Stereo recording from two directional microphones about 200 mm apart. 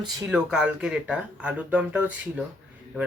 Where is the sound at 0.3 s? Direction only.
5° right (ahead or behind).